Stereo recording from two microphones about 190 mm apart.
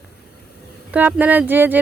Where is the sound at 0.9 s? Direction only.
10° right (ahead or behind).